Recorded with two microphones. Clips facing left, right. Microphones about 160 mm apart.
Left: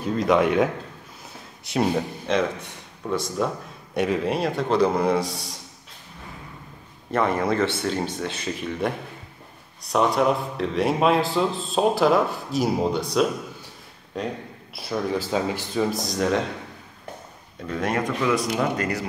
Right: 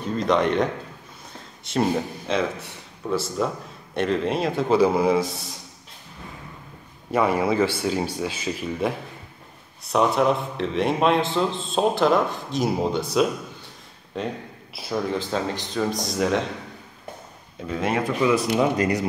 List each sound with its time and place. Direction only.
0.0 s a man's voice: centre (ahead or behind)
1.7 s a man's voice: centre (ahead or behind)
7.1 s a man's voice: 10° right (ahead or behind)
17.6 s speech: 5° right (ahead or behind)